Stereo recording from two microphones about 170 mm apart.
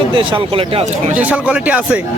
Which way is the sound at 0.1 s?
30° right (ahead or behind).